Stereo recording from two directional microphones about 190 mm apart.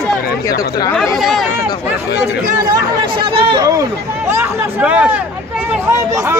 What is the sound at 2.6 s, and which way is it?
Speech, 20° right (ahead or behind).